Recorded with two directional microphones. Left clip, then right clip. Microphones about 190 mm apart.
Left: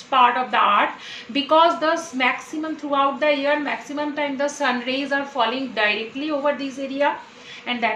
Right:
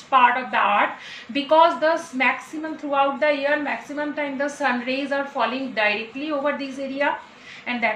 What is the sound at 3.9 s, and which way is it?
A woman's voice, 30° left (ahead or behind).